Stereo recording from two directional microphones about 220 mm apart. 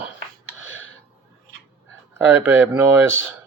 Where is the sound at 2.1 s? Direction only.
10° right (ahead or behind).